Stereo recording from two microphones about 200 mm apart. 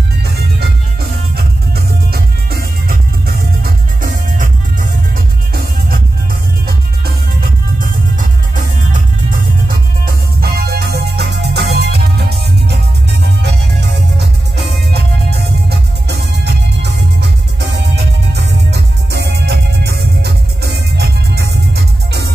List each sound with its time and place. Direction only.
2.1 s music: 50° right (ahead or behind)
8.2 s music: 40° right (ahead or behind)